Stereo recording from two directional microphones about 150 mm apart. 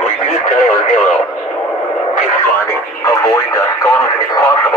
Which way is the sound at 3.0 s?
20° left (ahead or behind).